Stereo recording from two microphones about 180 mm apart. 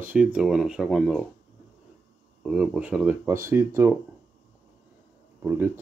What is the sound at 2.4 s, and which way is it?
Speech, 5° right (ahead or behind).